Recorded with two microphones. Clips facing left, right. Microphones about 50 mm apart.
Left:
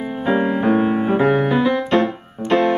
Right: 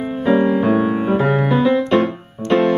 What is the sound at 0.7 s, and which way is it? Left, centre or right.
Music, left.